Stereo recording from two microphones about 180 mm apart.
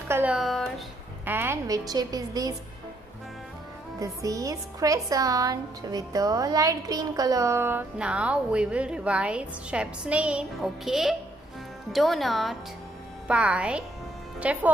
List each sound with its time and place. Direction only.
0.1 s speech: 5° right (ahead or behind)
1.2 s a woman's voice: 10° right (ahead or behind)
4.0 s a woman's voice: 20° right (ahead or behind)